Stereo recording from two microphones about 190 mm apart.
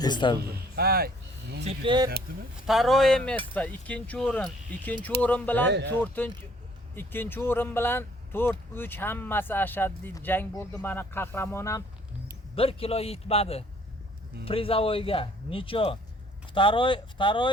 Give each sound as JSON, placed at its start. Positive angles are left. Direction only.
{"t": 0.0, "sound": "speech", "side_deg": 25}
{"t": 0.8, "sound": "speech", "side_deg": -55}
{"t": 1.6, "sound": "speech", "side_deg": -25}
{"t": 2.6, "sound": "speech", "side_deg": 0}
{"t": 5.6, "sound": "speech", "side_deg": -65}
{"t": 6.0, "sound": "speech", "side_deg": 10}
{"t": 12.5, "sound": "a man's voice", "side_deg": 30}